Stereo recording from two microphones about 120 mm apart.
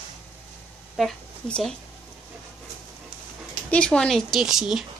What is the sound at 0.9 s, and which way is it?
Speech, centre (ahead or behind).